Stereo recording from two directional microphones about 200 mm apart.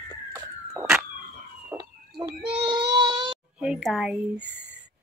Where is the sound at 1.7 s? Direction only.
20° right (ahead or behind).